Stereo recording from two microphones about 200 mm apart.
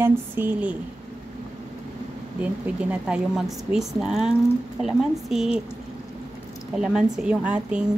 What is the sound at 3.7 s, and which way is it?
A woman's voice, centre (ahead or behind).